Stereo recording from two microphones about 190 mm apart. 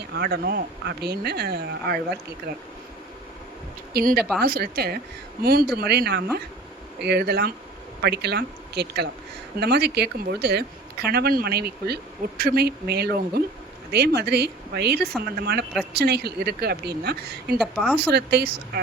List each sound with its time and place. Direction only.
0.1 s speech: 55° right (ahead or behind)
3.9 s speech: 55° right (ahead or behind)
17.6 s a woman's voice: 5° left (ahead or behind)
17.9 s speech: 60° right (ahead or behind)